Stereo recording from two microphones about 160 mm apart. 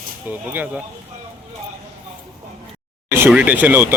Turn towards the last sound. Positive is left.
turn(degrees=-10)  # may be behind; listen again after turning